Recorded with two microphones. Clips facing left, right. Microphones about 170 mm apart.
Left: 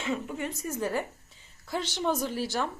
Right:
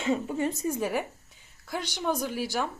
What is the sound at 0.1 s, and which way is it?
Speech, 35° right (ahead or behind).